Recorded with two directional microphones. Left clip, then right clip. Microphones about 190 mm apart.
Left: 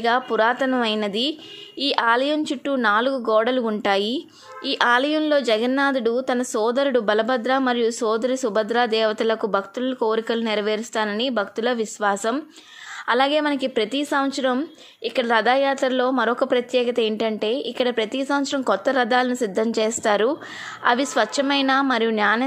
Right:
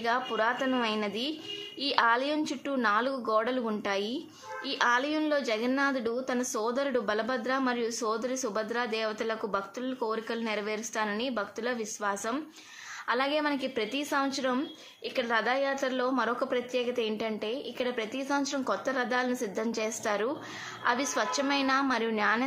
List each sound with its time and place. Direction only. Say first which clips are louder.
0.0 s a woman's voice: left 9 dB; 40° left (ahead or behind)